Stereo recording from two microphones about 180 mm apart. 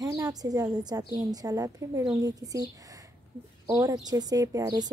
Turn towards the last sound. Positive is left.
turn(degrees=-20)  # may be behind; listen again after turning